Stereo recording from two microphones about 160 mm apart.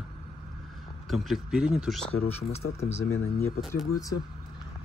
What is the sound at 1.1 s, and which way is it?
Speech, centre (ahead or behind).